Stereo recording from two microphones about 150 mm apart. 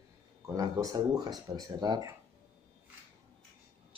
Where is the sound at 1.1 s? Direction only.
25° right (ahead or behind).